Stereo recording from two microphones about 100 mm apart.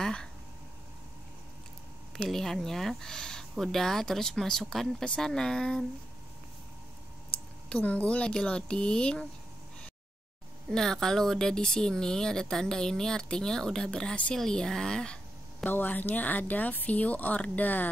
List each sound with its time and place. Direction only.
0.0 s a sound: 10° left (ahead or behind)
2.1 s speech: 5° left (ahead or behind)
7.7 s speech: 15° left (ahead or behind)
10.7 s speech: 5° left (ahead or behind)